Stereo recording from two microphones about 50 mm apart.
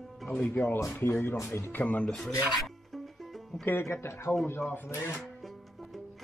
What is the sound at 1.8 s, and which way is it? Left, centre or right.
Speech, left.